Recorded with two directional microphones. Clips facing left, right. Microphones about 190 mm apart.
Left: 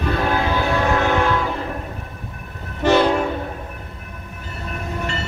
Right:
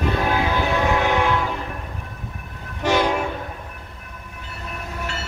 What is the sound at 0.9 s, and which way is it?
Train, 15° right (ahead or behind).